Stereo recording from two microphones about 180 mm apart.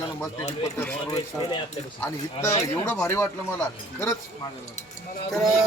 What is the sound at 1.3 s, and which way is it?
Speech, 15° left (ahead or behind).